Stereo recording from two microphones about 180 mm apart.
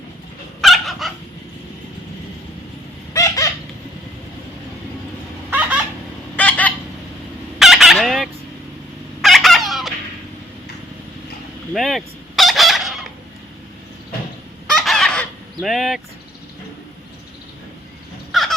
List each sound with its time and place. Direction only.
0.6 s dog: centre (ahead or behind)
3.1 s a sound: 20° left (ahead or behind)
5.5 s a sound: 10° right (ahead or behind)
6.3 s chicken: 10° left (ahead or behind)
7.6 s fowl: centre (ahead or behind)
9.2 s cat: centre (ahead or behind)
11.7 s fowl: centre (ahead or behind)
14.7 s fowl: centre (ahead or behind)
15.6 s speech: centre (ahead or behind)
18.3 s crow: centre (ahead or behind)